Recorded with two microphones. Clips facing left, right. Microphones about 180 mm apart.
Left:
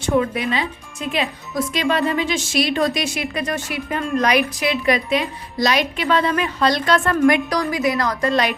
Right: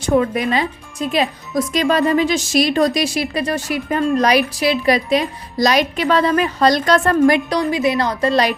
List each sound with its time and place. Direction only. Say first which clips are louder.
0.0 s a woman's voice: right 3 dB; 45° right (ahead or behind)